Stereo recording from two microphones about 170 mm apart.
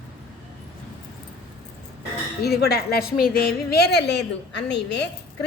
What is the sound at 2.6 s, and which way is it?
A woman's voice, 70° left (ahead or behind).